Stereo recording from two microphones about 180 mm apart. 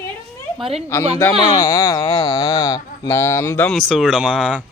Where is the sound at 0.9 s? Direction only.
10° left (ahead or behind).